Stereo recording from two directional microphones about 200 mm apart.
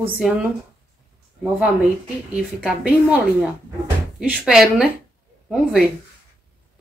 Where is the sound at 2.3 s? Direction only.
5° right (ahead or behind).